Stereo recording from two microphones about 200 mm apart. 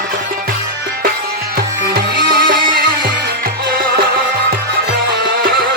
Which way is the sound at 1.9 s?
50° right (ahead or behind).